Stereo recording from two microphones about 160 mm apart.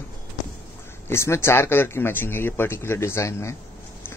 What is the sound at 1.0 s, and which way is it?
Speech, 15° left (ahead or behind).